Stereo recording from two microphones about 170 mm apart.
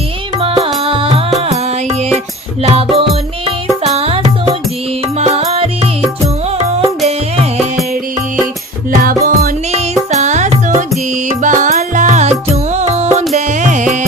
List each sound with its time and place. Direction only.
0.9 s music: 30° right (ahead or behind)
2.6 s music: 35° right (ahead or behind)
5.2 s music: 40° right (ahead or behind)
8.9 s music: 55° right (ahead or behind)
10.1 s music: 45° right (ahead or behind)